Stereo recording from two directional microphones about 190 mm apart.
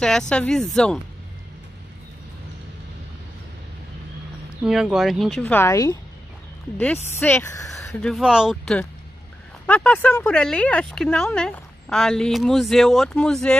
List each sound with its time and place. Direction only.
0.3 s speech: 5° left (ahead or behind)
4.6 s speech: 5° right (ahead or behind)
5.4 s speech: 10° left (ahead or behind)
7.2 s speech: 10° left (ahead or behind)
8.0 s speech: centre (ahead or behind)